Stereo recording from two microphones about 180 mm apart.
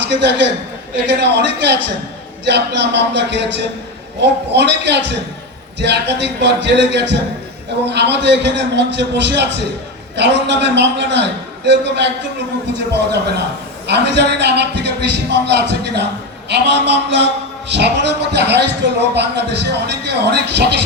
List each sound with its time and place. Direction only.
0.1 s a man's voice: 75° right (ahead or behind)